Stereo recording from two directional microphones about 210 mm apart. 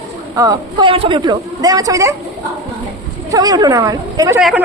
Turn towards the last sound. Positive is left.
turn(degrees=0)  # may be behind; listen again after turning